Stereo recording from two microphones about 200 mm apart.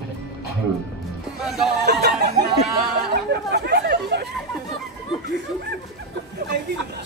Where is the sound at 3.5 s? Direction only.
60° right (ahead or behind).